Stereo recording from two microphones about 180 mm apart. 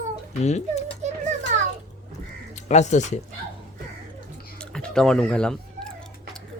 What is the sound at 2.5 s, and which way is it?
Speech, 40° left (ahead or behind).